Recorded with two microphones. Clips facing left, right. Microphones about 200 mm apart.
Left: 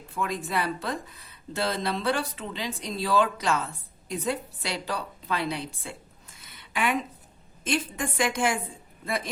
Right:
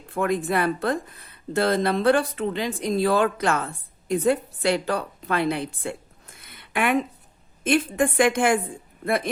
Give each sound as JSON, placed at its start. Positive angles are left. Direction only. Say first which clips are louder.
{"t": 0.1, "sound": "speech", "louder": "right 7 dB", "side_deg": -55}